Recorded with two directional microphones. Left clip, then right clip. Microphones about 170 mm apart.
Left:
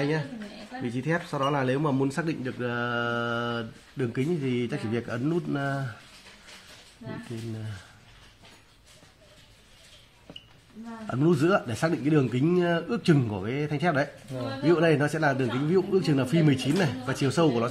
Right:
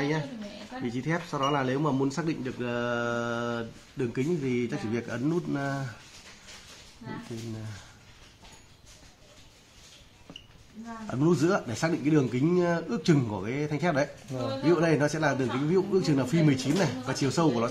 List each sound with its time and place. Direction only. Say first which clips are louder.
0.8 s speech: left 2 dB; 30° left (ahead or behind)
11.1 s speech: left 2 dB; 20° left (ahead or behind)